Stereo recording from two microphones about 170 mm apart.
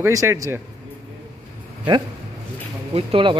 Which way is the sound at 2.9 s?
30° right (ahead or behind).